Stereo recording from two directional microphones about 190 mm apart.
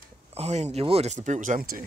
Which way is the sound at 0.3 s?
35° right (ahead or behind).